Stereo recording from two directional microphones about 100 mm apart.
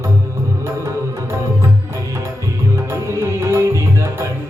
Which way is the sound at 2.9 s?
25° right (ahead or behind).